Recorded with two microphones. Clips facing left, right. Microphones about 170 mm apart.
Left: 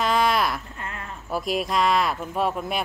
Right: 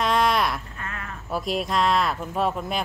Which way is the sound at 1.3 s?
Centre (ahead or behind).